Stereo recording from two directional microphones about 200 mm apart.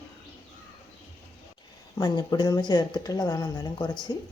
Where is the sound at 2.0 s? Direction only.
20° left (ahead or behind).